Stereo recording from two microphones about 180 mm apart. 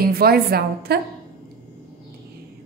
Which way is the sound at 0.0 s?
55° right (ahead or behind).